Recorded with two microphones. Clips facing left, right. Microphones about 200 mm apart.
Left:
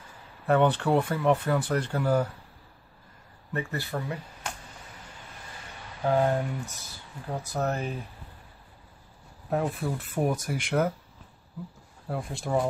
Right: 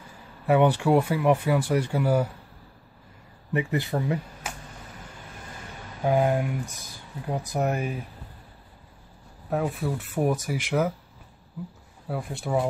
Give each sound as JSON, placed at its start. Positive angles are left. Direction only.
{"t": 0.5, "sound": "speech", "side_deg": -10}
{"t": 3.5, "sound": "speech", "side_deg": -20}
{"t": 4.4, "sound": "a sound", "side_deg": -5}
{"t": 6.0, "sound": "speech", "side_deg": -15}
{"t": 9.5, "sound": "speech", "side_deg": 0}
{"t": 12.1, "sound": "speech", "side_deg": -5}